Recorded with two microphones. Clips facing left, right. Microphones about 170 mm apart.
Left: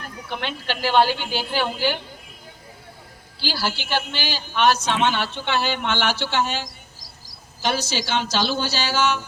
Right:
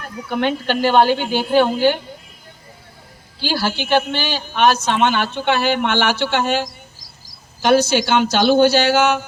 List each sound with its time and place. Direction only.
0.3 s a woman's voice: 50° right (ahead or behind)
3.4 s a woman's voice: 50° right (ahead or behind)